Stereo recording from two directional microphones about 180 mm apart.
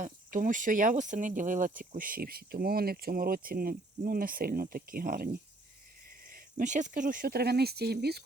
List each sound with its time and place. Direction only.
0.0 s speech: 45° right (ahead or behind); by 8.2 s 60° right (ahead or behind)